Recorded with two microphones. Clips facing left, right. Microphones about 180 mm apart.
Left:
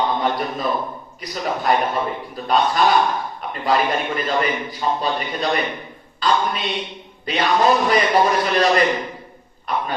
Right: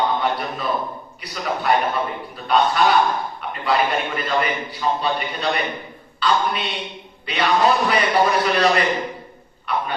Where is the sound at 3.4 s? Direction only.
40° left (ahead or behind).